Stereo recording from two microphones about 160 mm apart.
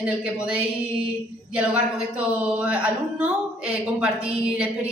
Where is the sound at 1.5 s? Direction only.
5° right (ahead or behind).